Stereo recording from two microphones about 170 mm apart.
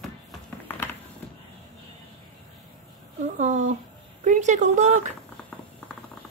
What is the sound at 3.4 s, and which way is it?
Speech, 45° right (ahead or behind).